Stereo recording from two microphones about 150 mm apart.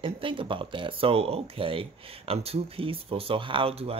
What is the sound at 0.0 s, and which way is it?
Speech, 35° right (ahead or behind).